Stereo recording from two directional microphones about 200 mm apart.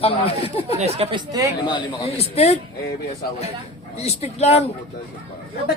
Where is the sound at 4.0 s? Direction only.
30° left (ahead or behind).